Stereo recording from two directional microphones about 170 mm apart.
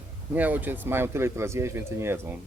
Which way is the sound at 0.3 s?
10° right (ahead or behind).